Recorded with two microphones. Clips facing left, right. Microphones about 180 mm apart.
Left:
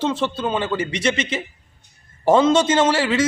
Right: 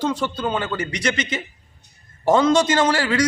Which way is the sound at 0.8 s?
25° left (ahead or behind).